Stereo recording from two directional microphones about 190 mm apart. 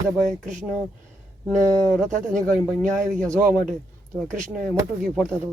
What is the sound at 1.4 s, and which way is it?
Speech, 10° left (ahead or behind).